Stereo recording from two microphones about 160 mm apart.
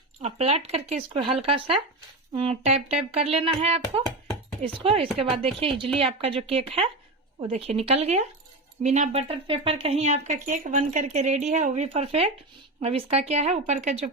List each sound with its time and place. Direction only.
0.2 s speech: 40° right (ahead or behind)